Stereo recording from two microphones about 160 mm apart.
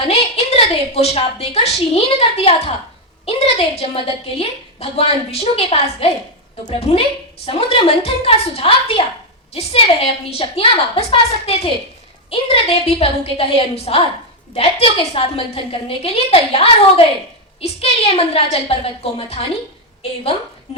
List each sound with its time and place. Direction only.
0.1 s a woman's voice: 40° left (ahead or behind)